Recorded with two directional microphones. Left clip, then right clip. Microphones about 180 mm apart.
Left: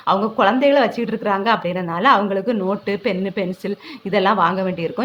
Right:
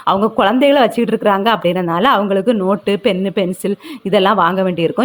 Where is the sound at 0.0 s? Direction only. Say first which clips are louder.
Right 3 dB; 35° right (ahead or behind).